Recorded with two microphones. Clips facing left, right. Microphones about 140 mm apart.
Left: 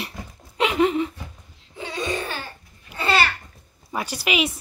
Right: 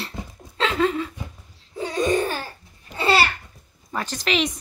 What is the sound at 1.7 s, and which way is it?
Laughter, 40° right (ahead or behind).